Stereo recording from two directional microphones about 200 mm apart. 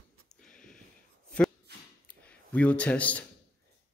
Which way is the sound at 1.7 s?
55° right (ahead or behind).